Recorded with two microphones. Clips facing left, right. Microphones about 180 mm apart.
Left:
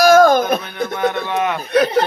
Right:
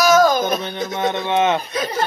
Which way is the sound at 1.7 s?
65° left (ahead or behind).